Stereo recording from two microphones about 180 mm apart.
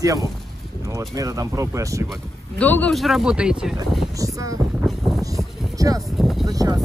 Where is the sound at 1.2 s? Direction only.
20° right (ahead or behind).